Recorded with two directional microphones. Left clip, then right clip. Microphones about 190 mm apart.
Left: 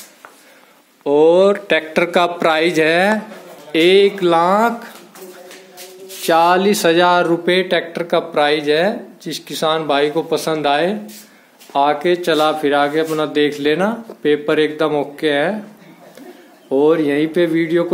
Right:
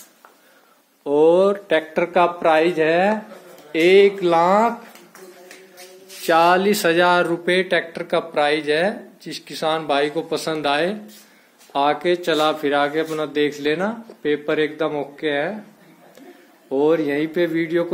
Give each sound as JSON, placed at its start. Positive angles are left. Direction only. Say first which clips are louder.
{"t": 1.0, "sound": "speech", "louder": "left 4 dB", "side_deg": -10}
{"t": 1.7, "sound": "speech", "louder": "left 4 dB", "side_deg": 10}
{"t": 2.1, "sound": "speech", "louder": "even", "side_deg": 25}
{"t": 3.7, "sound": "speech", "louder": "left 2 dB", "side_deg": 5}
{"t": 6.2, "sound": "speech", "louder": "left 3 dB", "side_deg": 0}
{"t": 16.6, "sound": "speech", "louder": "left 4 dB", "side_deg": 0}